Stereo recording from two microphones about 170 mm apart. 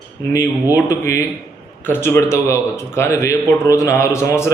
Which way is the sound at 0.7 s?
20° left (ahead or behind).